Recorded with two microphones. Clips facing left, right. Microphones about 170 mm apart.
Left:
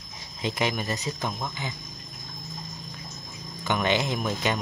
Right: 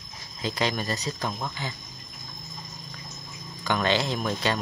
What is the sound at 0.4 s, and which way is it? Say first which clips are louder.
Speech: even; 20° left (ahead or behind).